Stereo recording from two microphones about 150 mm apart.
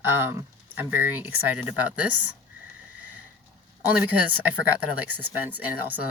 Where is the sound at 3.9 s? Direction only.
10° right (ahead or behind).